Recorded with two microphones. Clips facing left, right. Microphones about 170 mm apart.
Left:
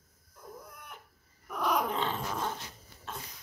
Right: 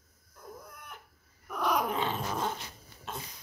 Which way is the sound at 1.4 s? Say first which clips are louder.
Even; centre (ahead or behind).